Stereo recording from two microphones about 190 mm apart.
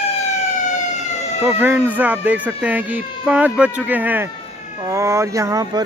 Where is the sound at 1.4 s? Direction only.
10° right (ahead or behind).